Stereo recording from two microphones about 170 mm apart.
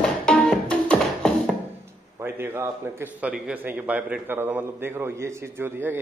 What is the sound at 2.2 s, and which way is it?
A man's voice, 15° right (ahead or behind).